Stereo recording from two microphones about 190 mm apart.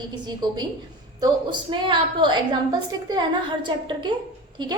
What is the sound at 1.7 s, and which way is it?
A woman's voice, 25° right (ahead or behind).